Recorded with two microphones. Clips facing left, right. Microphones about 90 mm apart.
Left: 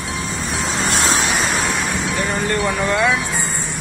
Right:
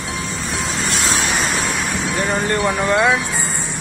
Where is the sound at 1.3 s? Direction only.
Centre (ahead or behind).